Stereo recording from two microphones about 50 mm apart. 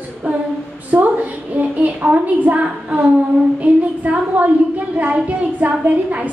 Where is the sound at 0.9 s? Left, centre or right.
Right.